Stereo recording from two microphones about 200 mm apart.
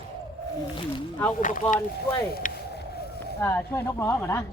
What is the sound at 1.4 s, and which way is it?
Speech, 40° left (ahead or behind).